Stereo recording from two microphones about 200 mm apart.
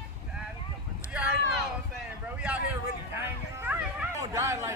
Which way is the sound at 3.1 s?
10° right (ahead or behind).